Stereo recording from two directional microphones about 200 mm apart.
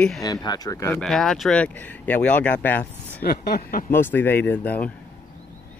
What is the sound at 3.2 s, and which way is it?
Speech, 45° left (ahead or behind).